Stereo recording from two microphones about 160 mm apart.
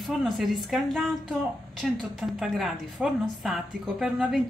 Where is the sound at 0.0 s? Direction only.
Centre (ahead or behind).